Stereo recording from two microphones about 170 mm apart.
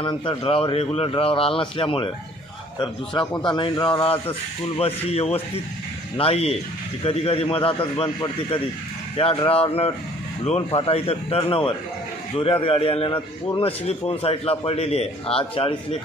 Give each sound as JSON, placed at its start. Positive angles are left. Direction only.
{"t": 0.0, "sound": "speech", "side_deg": 30}
{"t": 3.4, "sound": "speech", "side_deg": 25}